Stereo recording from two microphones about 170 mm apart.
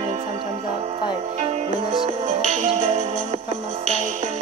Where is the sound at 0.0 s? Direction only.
35° right (ahead or behind).